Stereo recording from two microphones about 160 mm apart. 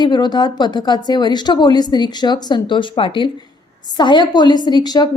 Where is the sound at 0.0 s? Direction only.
25° left (ahead or behind).